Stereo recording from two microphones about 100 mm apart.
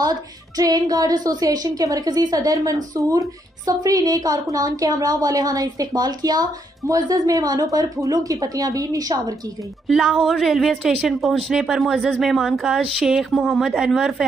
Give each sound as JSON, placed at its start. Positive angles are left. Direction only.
{"t": 0.0, "sound": "a woman's voice", "side_deg": -40}
{"t": 9.8, "sound": "speech", "side_deg": 0}